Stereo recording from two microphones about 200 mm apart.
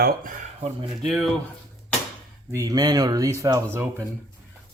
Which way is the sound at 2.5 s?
20° right (ahead or behind).